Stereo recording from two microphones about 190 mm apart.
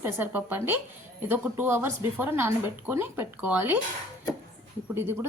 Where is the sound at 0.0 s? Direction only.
10° right (ahead or behind).